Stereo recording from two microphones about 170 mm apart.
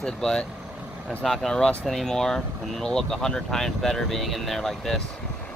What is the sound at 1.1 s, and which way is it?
Speech, centre (ahead or behind).